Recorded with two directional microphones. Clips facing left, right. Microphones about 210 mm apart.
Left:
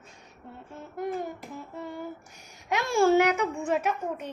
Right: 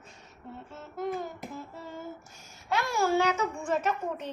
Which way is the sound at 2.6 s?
20° left (ahead or behind).